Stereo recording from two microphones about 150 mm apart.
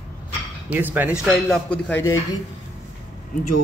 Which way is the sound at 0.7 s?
10° right (ahead or behind).